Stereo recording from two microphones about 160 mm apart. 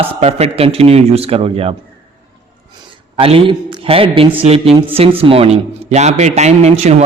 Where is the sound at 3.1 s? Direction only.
35° right (ahead or behind).